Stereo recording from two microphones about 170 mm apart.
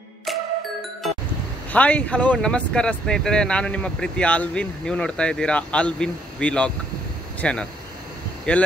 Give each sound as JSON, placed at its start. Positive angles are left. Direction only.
{"t": 1.7, "sound": "speech", "side_deg": 10}